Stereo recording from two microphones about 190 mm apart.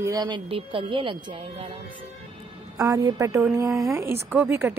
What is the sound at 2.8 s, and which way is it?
A woman's voice, 20° right (ahead or behind).